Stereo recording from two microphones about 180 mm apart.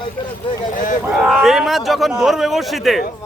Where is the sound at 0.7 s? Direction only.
45° left (ahead or behind).